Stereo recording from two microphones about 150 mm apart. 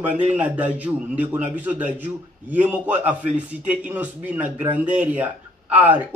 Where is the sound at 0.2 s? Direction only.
10° right (ahead or behind).